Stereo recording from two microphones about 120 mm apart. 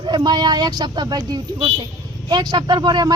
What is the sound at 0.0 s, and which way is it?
Speech, 35° right (ahead or behind).